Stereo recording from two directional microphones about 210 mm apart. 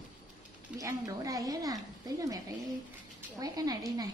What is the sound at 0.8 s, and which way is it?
A woman's voice, 15° right (ahead or behind).